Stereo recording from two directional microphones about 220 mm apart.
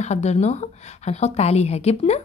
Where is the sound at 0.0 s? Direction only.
30° left (ahead or behind).